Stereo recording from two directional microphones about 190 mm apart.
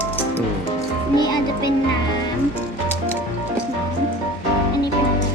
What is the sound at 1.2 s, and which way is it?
Music, 20° left (ahead or behind).